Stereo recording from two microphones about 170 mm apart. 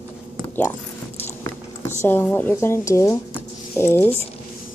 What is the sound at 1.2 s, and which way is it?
Biting, 15° left (ahead or behind).